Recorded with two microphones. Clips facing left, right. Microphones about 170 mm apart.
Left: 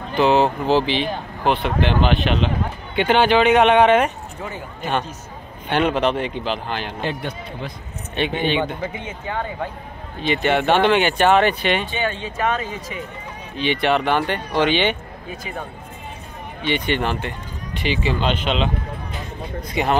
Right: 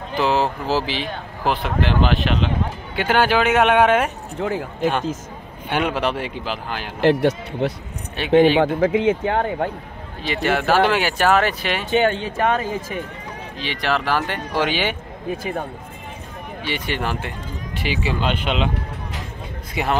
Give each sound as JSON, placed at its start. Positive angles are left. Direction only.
{"t": 0.1, "sound": "speech", "side_deg": 0}
{"t": 4.4, "sound": "speech", "side_deg": -90}
{"t": 5.7, "sound": "speech", "side_deg": -10}
{"t": 7.0, "sound": "speech", "side_deg": -80}
{"t": 8.2, "sound": "speech", "side_deg": -5}
{"t": 8.5, "sound": "speech", "side_deg": -90}
{"t": 10.2, "sound": "speech", "side_deg": 0}
{"t": 12.0, "sound": "speech", "side_deg": -50}
{"t": 13.6, "sound": "speech", "side_deg": 0}
{"t": 16.6, "sound": "speech", "side_deg": -5}
{"t": 19.7, "sound": "speech", "side_deg": -5}